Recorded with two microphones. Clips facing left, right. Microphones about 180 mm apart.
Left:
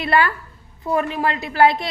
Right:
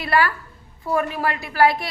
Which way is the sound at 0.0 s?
20° left (ahead or behind).